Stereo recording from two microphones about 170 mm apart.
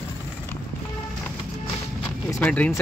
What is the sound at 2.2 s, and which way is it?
Speech, 15° left (ahead or behind).